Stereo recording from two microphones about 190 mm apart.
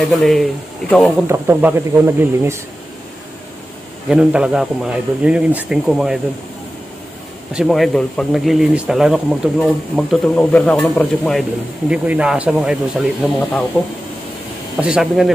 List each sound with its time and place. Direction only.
0.0 s speech: centre (ahead or behind)
1.3 s speech: 15° right (ahead or behind)
4.1 s speech: 5° right (ahead or behind)
7.5 s speech: centre (ahead or behind)
11.9 s speech: 5° right (ahead or behind)
14.8 s speech: 5° right (ahead or behind)